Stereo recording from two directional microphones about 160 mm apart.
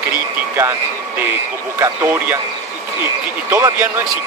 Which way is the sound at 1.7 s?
15° right (ahead or behind).